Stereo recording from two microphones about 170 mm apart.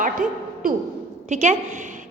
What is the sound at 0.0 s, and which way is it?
Speech, 55° right (ahead or behind).